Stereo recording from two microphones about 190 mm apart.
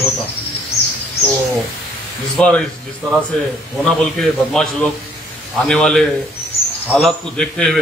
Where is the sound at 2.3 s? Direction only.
5° left (ahead or behind).